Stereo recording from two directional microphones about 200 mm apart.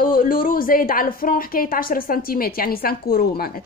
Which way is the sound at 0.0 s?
45° left (ahead or behind).